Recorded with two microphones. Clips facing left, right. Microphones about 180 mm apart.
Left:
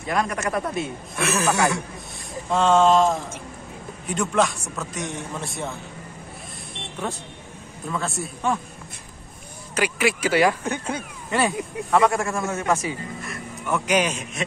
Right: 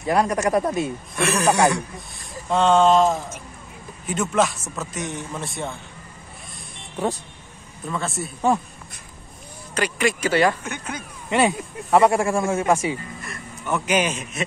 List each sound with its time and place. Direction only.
0.1 s speech: 35° right (ahead or behind)
1.1 s a man's voice: centre (ahead or behind)
7.9 s a man's voice: centre (ahead or behind)
9.8 s speech: 5° left (ahead or behind)
10.6 s speech: 30° left (ahead or behind)
11.2 s a man's voice: 20° right (ahead or behind)
13.2 s a man's voice: centre (ahead or behind)